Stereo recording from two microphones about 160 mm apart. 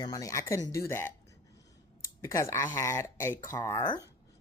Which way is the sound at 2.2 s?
20° left (ahead or behind).